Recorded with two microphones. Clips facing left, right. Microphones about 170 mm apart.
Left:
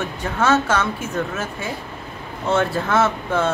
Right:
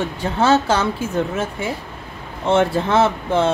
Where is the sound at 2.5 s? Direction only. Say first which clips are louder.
Right 3 dB; 25° right (ahead or behind).